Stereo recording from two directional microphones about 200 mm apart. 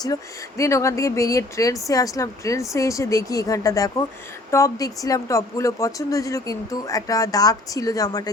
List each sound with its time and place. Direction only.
0.0 s speech: 15° left (ahead or behind)